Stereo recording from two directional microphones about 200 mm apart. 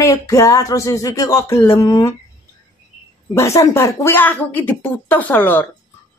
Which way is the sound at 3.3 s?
15° left (ahead or behind).